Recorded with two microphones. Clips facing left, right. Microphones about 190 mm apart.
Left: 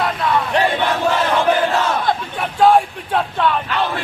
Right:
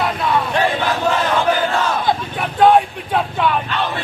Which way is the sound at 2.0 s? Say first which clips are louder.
Right 1 dB; centre (ahead or behind).